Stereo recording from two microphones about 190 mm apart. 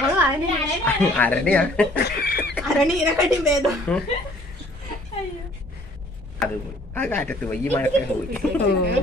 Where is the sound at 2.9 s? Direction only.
Centre (ahead or behind).